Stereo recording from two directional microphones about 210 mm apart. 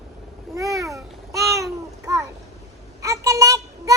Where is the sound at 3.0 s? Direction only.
15° right (ahead or behind).